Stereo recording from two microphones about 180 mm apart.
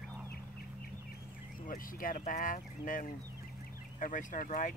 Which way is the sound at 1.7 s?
50° left (ahead or behind).